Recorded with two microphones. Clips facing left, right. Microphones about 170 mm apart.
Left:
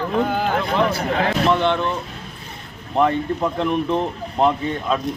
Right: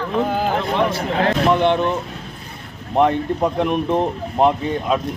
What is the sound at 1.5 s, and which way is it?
Speech, 15° right (ahead or behind).